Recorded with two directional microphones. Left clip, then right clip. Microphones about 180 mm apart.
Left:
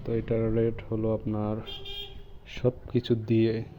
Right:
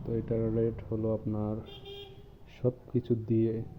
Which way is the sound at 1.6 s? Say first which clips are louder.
Left 7 dB; 55° right (ahead or behind).